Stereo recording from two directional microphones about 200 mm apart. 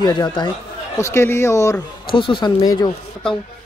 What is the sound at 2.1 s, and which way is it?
Speech, 25° left (ahead or behind).